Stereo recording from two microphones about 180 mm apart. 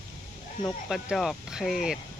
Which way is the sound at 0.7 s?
Centre (ahead or behind).